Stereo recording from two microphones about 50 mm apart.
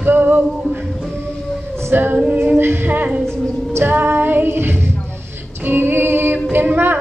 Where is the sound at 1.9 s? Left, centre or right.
Right.